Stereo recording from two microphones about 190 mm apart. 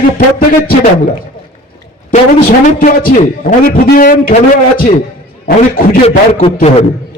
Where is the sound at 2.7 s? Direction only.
50° left (ahead or behind).